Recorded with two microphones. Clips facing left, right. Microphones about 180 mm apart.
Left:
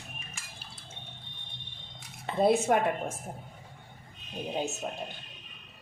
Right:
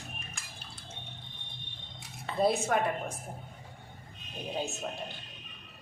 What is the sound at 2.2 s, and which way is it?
Cutlery, 20° left (ahead or behind).